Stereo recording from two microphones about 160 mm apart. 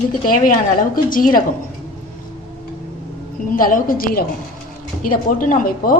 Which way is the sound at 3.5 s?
60° left (ahead or behind).